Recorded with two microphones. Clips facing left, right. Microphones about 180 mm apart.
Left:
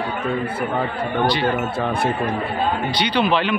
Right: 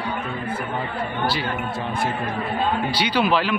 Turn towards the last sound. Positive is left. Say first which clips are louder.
# left 1 dB
turn(degrees=-5)  # may be behind; listen again after turning